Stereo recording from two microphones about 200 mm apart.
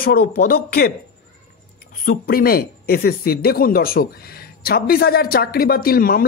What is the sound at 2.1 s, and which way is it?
Speech, 50° left (ahead or behind).